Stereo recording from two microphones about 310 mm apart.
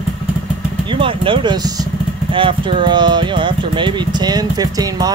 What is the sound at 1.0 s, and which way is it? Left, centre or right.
Speech, centre.